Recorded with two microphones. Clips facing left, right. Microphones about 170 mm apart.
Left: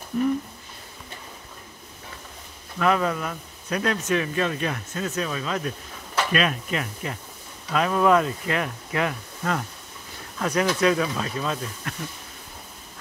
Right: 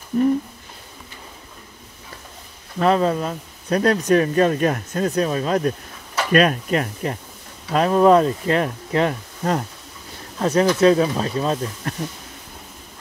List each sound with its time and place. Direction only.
2.8 s speech: 30° right (ahead or behind)